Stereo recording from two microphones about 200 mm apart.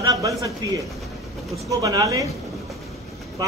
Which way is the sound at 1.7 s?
20° right (ahead or behind).